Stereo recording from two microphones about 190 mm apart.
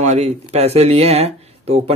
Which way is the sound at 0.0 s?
35° right (ahead or behind).